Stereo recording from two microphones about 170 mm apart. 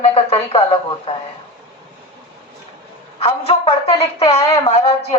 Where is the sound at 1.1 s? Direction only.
30° left (ahead or behind).